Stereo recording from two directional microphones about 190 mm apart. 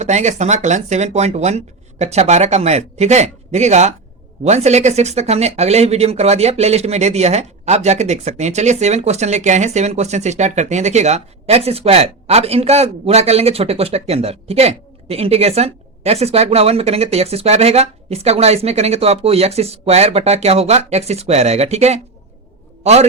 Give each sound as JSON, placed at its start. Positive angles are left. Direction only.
{"t": 0.0, "sound": "a man's voice", "side_deg": -40}